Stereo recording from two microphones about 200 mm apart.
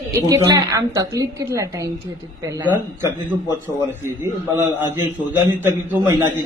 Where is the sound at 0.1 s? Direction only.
15° right (ahead or behind).